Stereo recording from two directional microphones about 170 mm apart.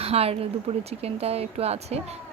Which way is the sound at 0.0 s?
35° right (ahead or behind).